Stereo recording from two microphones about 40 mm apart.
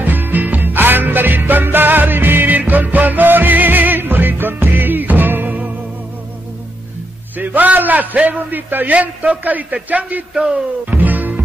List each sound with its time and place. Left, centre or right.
0.0 s music: right
2.5 s music: right
7.3 s a sound: right
8.3 s a man's voice: right
8.9 s a man's voice: right
9.4 s a man's voice: right
10.9 s music: right